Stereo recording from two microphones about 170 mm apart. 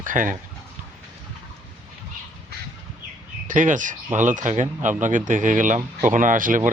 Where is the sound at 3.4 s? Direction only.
50° right (ahead or behind).